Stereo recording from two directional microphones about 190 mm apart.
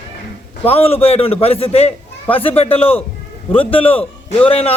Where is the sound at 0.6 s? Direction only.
30° left (ahead or behind).